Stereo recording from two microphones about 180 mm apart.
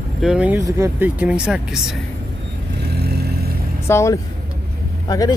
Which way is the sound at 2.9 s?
60° right (ahead or behind).